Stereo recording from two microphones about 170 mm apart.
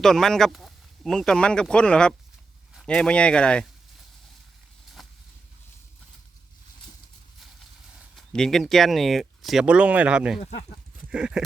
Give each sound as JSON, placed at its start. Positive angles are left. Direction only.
{"t": 0.0, "sound": "speech", "side_deg": 0}
{"t": 5.0, "sound": "a sound", "side_deg": 0}
{"t": 8.1, "sound": "speech", "side_deg": 5}
{"t": 10.4, "sound": "speech", "side_deg": 40}
{"t": 11.1, "sound": "speech", "side_deg": -5}